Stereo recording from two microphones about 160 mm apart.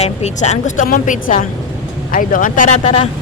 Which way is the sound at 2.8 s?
35° left (ahead or behind).